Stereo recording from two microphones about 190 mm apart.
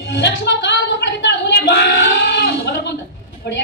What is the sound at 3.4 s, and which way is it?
Speech, 60° left (ahead or behind).